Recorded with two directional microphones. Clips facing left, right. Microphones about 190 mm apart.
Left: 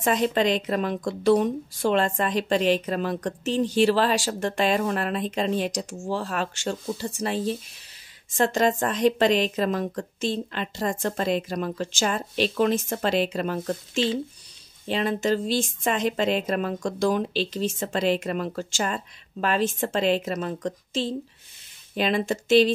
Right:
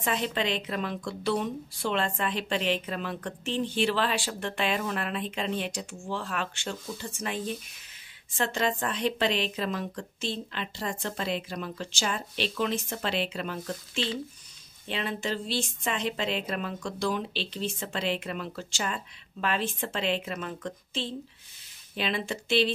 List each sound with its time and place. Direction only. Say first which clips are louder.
0.0 s a woman's voice: left 7 dB; 45° left (ahead or behind)